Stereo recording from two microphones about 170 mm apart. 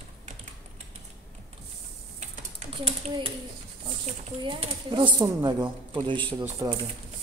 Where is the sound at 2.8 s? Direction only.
35° right (ahead or behind).